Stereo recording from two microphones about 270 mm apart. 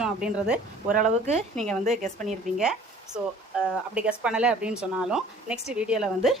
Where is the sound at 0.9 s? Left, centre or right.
Right.